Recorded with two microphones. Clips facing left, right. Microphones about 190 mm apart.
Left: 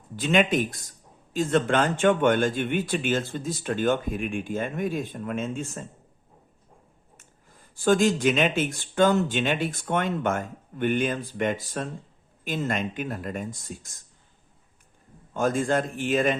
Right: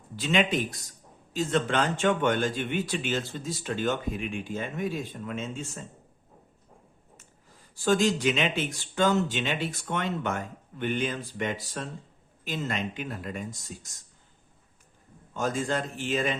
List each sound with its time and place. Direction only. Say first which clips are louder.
0.2 s speech: left 4 dB; 50° left (ahead or behind)
7.9 s speech: left 3 dB; 50° left (ahead or behind)
15.3 s speech: left 5 dB; 55° left (ahead or behind)